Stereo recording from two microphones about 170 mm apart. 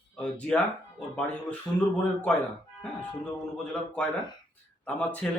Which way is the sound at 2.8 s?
5° left (ahead or behind).